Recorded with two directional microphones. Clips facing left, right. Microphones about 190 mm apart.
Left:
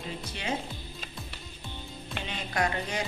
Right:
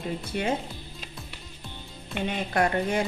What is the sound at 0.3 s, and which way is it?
Speech, 50° right (ahead or behind).